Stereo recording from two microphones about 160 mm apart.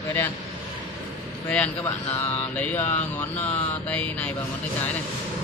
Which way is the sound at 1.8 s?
20° left (ahead or behind).